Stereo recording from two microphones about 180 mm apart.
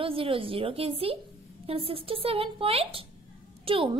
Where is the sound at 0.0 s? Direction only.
30° right (ahead or behind).